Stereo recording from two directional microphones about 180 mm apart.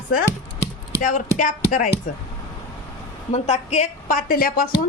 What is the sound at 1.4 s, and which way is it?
Speech, 45° left (ahead or behind).